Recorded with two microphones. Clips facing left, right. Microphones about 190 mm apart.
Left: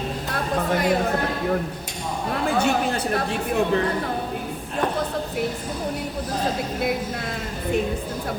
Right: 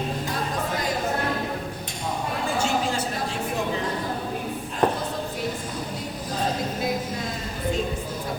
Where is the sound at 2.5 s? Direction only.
60° left (ahead or behind).